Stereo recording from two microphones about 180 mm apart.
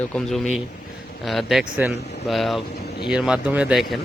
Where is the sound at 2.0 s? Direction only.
65° left (ahead or behind).